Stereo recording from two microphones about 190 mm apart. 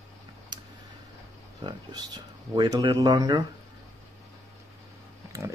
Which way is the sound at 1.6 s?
20° right (ahead or behind).